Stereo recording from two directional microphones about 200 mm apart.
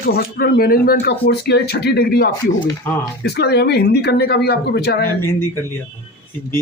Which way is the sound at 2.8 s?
10° left (ahead or behind).